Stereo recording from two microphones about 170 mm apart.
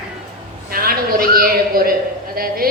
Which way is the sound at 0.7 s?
60° right (ahead or behind).